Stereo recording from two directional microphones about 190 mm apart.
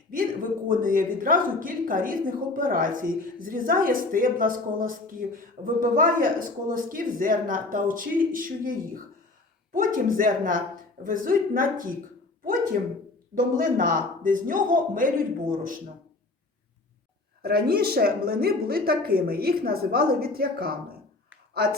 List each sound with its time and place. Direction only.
0.7 s a woman's voice: 45° right (ahead or behind)
9.7 s a woman's voice: 45° right (ahead or behind)
13.3 s a woman's voice: 45° right (ahead or behind)
17.4 s a woman's voice: 55° right (ahead or behind)